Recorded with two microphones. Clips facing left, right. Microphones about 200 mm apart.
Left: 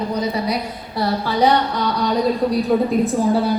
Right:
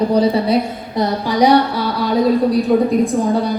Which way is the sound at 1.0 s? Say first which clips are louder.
Right 3 dB; 15° right (ahead or behind).